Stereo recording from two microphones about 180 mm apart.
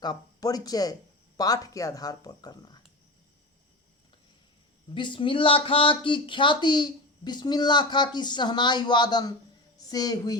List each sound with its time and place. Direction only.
0.0 s speech: 20° left (ahead or behind)
4.9 s speech: 25° left (ahead or behind)